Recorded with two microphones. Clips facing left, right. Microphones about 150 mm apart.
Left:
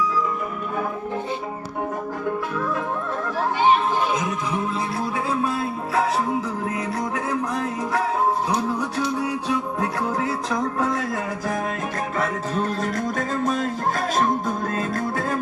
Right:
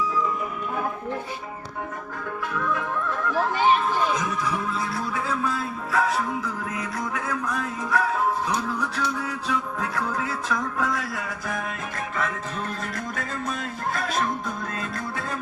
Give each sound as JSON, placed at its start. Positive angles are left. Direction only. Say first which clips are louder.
{"t": 2.2, "sound": "music", "louder": "left 2 dB", "side_deg": 30}
{"t": 4.1, "sound": "music", "louder": "left 2 dB", "side_deg": 25}